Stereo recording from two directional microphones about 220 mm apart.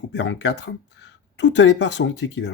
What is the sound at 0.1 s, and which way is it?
Speech, 50° left (ahead or behind).